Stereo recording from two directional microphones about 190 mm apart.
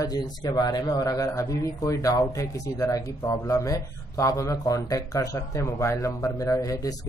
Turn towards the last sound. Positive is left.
turn(degrees=20)  # may be behind; listen again after turning